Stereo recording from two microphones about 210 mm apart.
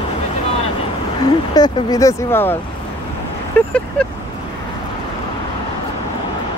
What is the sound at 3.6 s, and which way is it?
Speech, 10° left (ahead or behind).